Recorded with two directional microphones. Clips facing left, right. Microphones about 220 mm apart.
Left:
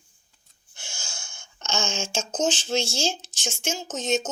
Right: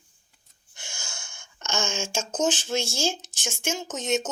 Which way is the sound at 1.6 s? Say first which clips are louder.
Even; 55° right (ahead or behind).